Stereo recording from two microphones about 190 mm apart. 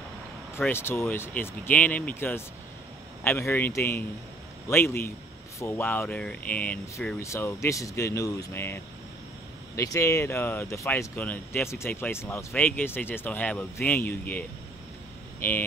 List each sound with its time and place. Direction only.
0.6 s speech: 10° left (ahead or behind)
15.4 s speech: 10° left (ahead or behind)